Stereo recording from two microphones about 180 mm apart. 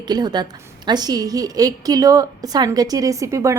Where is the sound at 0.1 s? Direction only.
20° right (ahead or behind).